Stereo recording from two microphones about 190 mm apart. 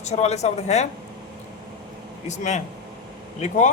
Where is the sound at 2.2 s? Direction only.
40° left (ahead or behind).